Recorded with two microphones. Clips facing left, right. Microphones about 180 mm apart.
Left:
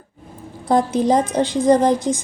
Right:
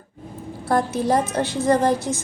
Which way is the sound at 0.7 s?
15° left (ahead or behind).